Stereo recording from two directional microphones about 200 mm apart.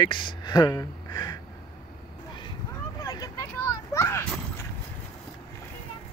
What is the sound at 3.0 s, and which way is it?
Vehicle, 20° left (ahead or behind).